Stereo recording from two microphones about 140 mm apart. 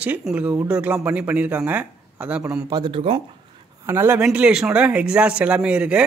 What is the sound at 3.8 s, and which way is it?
Speech, 15° right (ahead or behind).